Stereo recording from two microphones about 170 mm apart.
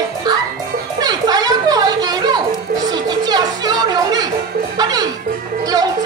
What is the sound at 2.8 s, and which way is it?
Music, 25° right (ahead or behind).